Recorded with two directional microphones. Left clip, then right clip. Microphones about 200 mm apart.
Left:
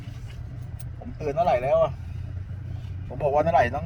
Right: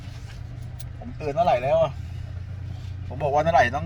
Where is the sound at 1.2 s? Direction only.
15° left (ahead or behind).